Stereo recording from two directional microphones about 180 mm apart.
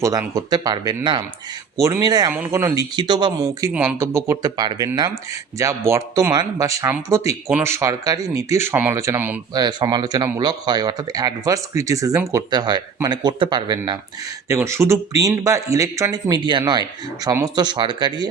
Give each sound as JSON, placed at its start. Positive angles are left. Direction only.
{"t": 0.0, "sound": "speech", "side_deg": -20}
{"t": 9.6, "sound": "speech", "side_deg": -25}